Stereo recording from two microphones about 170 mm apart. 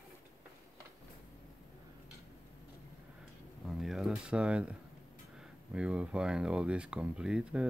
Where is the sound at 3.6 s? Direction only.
Centre (ahead or behind).